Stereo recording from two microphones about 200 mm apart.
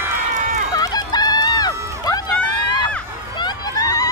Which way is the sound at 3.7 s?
20° left (ahead or behind).